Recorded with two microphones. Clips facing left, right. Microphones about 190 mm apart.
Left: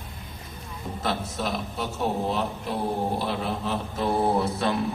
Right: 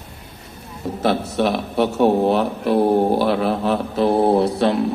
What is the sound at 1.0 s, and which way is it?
A man's voice, 70° right (ahead or behind).